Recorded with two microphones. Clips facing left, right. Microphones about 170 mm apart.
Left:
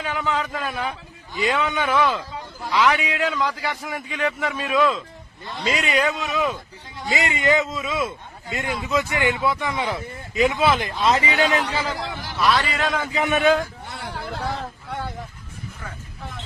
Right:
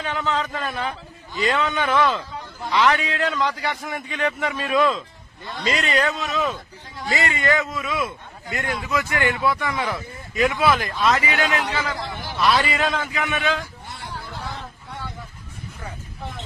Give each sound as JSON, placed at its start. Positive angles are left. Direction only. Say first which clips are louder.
{"t": 0.0, "sound": "a man's voice", "louder": "even", "side_deg": 10}
{"t": 11.3, "sound": "a man's voice", "louder": "left 2 dB", "side_deg": 40}
{"t": 12.5, "sound": "a man's voice", "louder": "right 1 dB", "side_deg": 0}
{"t": 13.2, "sound": "a sound", "louder": "left 11 dB", "side_deg": 50}